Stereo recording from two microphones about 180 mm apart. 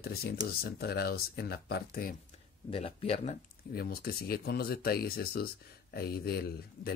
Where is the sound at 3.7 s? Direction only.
60° left (ahead or behind).